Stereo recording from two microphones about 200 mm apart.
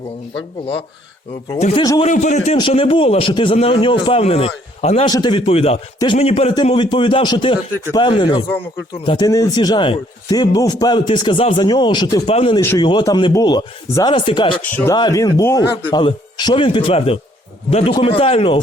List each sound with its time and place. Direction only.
1.5 s a man's voice: 30° left (ahead or behind)
1.8 s speech: 20° left (ahead or behind)
2.0 s a man's voice: 35° left (ahead or behind)
12.5 s speech: 15° left (ahead or behind)